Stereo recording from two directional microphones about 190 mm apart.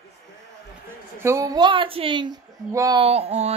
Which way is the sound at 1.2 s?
15° right (ahead or behind).